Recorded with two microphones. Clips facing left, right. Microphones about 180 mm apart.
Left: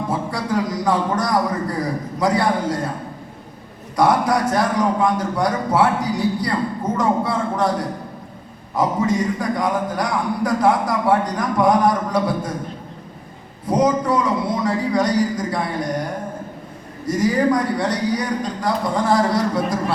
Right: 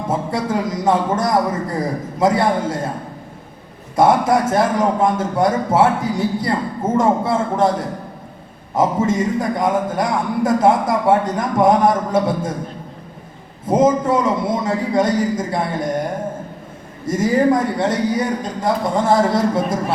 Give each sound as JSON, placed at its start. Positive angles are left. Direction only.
{"t": 0.1, "sound": "a man's voice", "side_deg": -25}
{"t": 3.9, "sound": "a man's voice", "side_deg": -25}
{"t": 13.7, "sound": "a man's voice", "side_deg": -25}
{"t": 17.1, "sound": "a man's voice", "side_deg": -25}